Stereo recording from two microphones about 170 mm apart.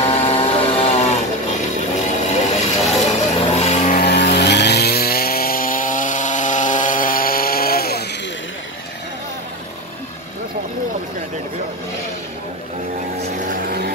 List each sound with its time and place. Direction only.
0.0 s vehicle: 35° left (ahead or behind)
3.0 s music: 40° left (ahead or behind)
3.9 s chainsaw: 75° left (ahead or behind)
13.7 s vehicle: 70° right (ahead or behind)